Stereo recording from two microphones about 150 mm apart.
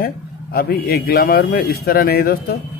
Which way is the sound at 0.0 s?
90° left.